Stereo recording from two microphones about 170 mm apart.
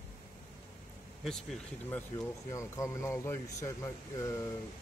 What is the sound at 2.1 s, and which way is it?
A man's voice, 20° left (ahead or behind).